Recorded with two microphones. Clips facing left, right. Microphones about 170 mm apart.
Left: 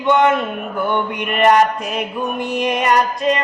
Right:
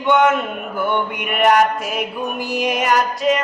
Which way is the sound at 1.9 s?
5° right (ahead or behind).